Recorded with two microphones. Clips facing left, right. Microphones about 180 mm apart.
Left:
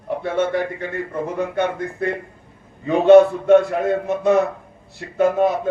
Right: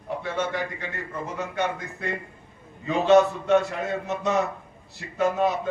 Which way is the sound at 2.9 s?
55° left (ahead or behind).